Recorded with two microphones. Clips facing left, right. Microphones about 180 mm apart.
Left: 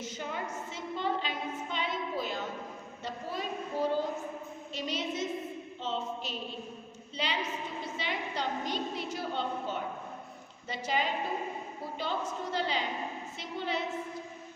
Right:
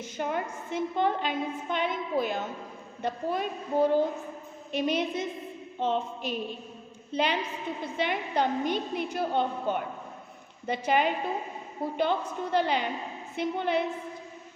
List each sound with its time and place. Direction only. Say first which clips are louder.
0.0 s a woman's voice: right 6 dB; 55° right (ahead or behind)